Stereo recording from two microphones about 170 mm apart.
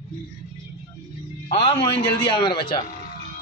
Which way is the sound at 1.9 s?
70° left (ahead or behind).